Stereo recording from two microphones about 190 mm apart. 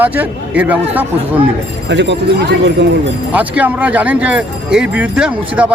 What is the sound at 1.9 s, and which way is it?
Speech, 65° right (ahead or behind).